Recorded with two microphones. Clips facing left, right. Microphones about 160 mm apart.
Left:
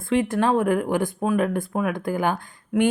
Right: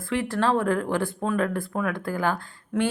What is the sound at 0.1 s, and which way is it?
Speech, 20° left (ahead or behind).